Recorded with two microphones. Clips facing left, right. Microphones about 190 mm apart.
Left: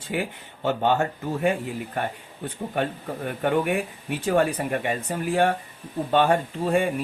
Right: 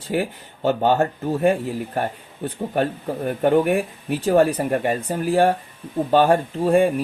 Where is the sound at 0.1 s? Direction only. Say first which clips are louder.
Right 5 dB; 35° right (ahead or behind).